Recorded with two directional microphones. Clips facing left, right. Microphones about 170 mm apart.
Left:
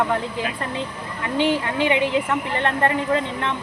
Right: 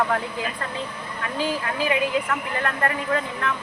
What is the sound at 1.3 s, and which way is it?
A woman's voice, 25° left (ahead or behind).